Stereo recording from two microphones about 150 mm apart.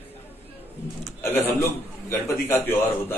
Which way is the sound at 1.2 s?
15° left (ahead or behind).